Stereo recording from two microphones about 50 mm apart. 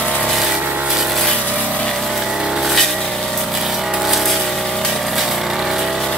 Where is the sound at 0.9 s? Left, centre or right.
Centre.